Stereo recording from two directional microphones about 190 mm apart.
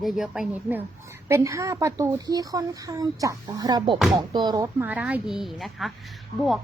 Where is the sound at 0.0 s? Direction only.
Centre (ahead or behind).